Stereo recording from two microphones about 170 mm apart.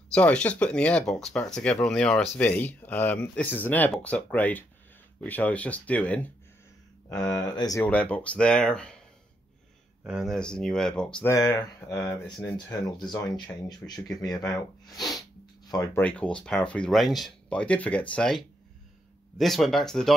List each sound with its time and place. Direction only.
0.1 s speech: 5° left (ahead or behind)
7.1 s speech: 20° left (ahead or behind)
7.9 s speech: 5° left (ahead or behind)
10.0 s speech: centre (ahead or behind)
11.3 s speech: 20° left (ahead or behind)
16.0 s speech: 10° left (ahead or behind)